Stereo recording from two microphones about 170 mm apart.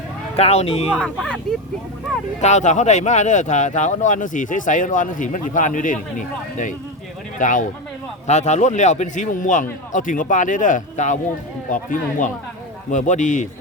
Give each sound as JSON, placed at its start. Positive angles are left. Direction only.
{"t": 0.3, "sound": "speech", "side_deg": 35}
{"t": 0.9, "sound": "speech", "side_deg": 5}
{"t": 2.4, "sound": "speech", "side_deg": 45}